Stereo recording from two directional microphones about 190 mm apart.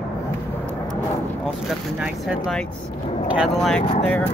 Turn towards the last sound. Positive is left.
turn(degrees=10)  # may be behind; listen again after turning